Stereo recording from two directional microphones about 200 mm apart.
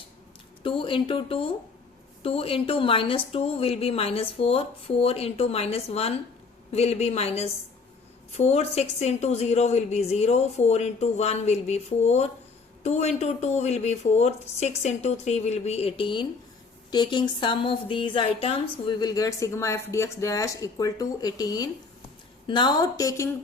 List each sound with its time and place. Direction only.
0.6 s a woman's voice: 25° left (ahead or behind)